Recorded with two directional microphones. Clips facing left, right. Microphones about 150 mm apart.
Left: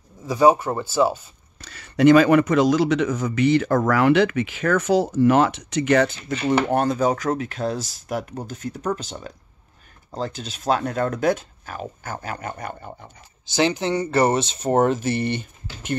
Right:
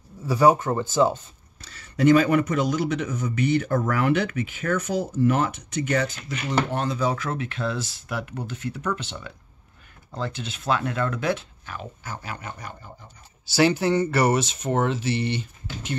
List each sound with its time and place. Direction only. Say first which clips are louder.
0.2 s speech: left 2 dB; 15° left (ahead or behind)
1.6 s speech: left 5 dB; 70° left (ahead or behind)
6.7 s speech: left 5 dB; 50° left (ahead or behind)
13.5 s speech: right 1 dB; 20° left (ahead or behind); by 16.0 s 50° left (ahead or behind)